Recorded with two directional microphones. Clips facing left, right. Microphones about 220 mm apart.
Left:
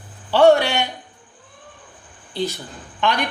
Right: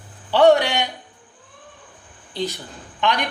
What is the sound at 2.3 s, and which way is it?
Speech, 15° right (ahead or behind).